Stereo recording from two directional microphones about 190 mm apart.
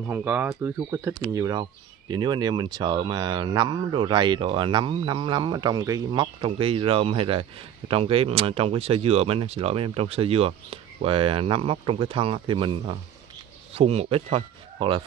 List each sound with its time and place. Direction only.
0.0 s speech: 10° right (ahead or behind); by 15.0 s 30° right (ahead or behind)